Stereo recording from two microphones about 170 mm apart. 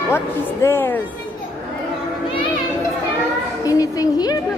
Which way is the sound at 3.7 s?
20° left (ahead or behind).